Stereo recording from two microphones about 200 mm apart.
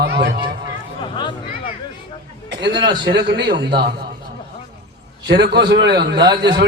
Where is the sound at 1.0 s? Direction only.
25° left (ahead or behind).